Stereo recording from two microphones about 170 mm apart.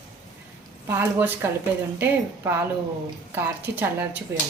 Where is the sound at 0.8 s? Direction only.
15° right (ahead or behind).